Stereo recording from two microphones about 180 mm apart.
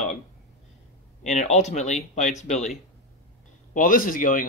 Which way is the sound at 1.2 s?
40° left (ahead or behind).